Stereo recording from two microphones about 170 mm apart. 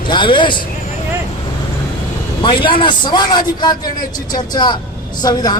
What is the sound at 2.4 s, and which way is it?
A man's voice, 30° left (ahead or behind).